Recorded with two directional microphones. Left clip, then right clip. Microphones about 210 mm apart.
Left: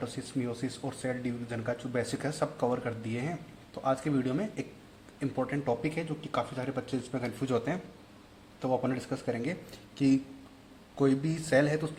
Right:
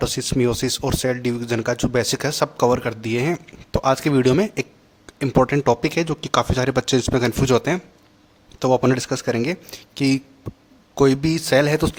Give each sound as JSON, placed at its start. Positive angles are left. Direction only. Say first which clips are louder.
{"t": 0.0, "sound": "speech", "louder": "right 15 dB", "side_deg": -45}